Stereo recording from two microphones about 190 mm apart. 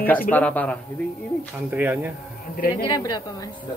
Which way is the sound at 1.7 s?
10° right (ahead or behind).